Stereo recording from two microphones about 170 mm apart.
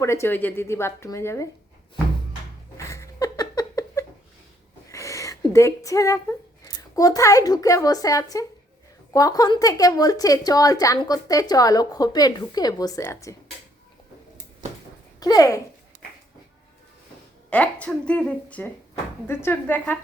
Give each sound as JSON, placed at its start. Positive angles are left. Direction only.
{"t": 0.0, "sound": "speech", "side_deg": 15}
{"t": 2.7, "sound": "a sound", "side_deg": 20}
{"t": 6.9, "sound": "a woman's voice", "side_deg": 20}
{"t": 15.2, "sound": "a woman's voice", "side_deg": 20}
{"t": 17.5, "sound": "speech", "side_deg": 10}